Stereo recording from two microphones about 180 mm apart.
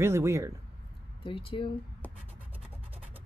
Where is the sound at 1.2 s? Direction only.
30° left (ahead or behind).